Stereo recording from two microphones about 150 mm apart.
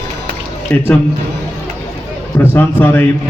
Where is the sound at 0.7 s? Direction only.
15° left (ahead or behind).